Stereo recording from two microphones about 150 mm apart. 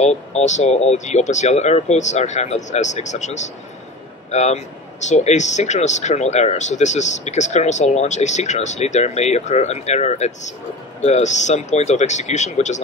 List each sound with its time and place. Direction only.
0.0 s a man's voice: 50° left (ahead or behind)